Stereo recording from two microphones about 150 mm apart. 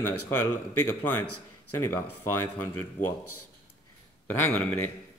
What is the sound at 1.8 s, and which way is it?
Speech, 15° left (ahead or behind).